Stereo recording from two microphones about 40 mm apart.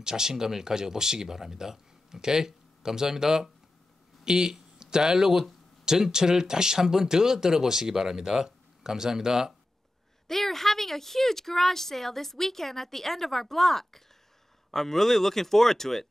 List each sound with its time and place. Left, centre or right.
0.0 s speech: centre
10.2 s speech: centre